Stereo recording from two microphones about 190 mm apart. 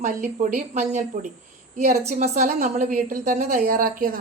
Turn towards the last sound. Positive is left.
turn(degrees=-50)  # may be behind; listen again after turning